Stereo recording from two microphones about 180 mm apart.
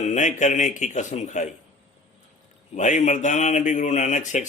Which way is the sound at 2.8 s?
40° left (ahead or behind).